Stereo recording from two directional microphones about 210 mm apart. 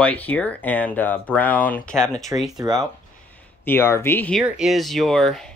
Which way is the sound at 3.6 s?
10° left (ahead or behind).